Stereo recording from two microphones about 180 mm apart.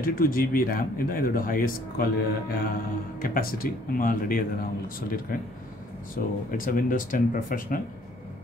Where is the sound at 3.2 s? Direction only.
55° left (ahead or behind).